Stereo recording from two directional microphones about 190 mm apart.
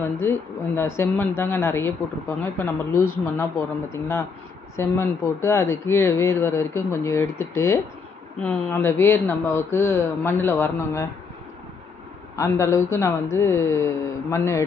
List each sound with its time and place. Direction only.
0.0 s speech: 10° left (ahead or behind)
12.4 s speech: 15° left (ahead or behind)